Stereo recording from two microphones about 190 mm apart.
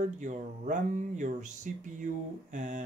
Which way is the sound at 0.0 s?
40° right (ahead or behind).